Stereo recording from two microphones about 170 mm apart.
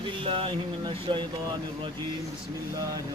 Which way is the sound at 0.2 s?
30° right (ahead or behind).